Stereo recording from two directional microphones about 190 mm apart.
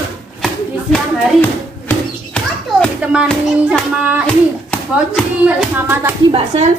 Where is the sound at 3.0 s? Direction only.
5° right (ahead or behind).